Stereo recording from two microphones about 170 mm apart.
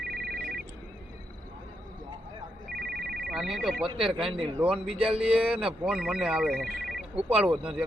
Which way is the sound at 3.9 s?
Centre (ahead or behind).